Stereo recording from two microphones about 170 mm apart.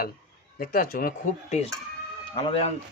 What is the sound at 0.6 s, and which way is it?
Speech, 55° left (ahead or behind).